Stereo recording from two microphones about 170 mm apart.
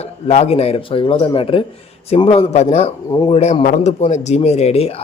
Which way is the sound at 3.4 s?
40° left (ahead or behind).